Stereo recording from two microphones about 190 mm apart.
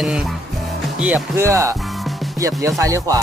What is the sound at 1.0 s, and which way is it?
Speech, 10° right (ahead or behind).